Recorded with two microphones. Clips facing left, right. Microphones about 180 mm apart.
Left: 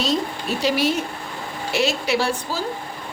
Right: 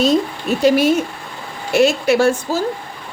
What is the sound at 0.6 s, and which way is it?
A woman's voice, 50° right (ahead or behind).